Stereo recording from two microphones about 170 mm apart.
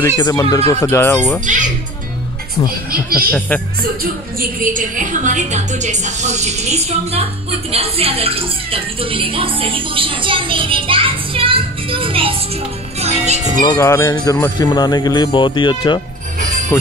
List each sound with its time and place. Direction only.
0.0 s speech: 20° left (ahead or behind)
1.4 s a woman's voice: 45° right (ahead or behind)
3.3 s speech: 10° left (ahead or behind)
3.8 s a woman's voice: 60° right (ahead or behind); by 12.4 s 30° right (ahead or behind)
13.0 s music: 40° right (ahead or behind)
13.6 s speech: 20° left (ahead or behind)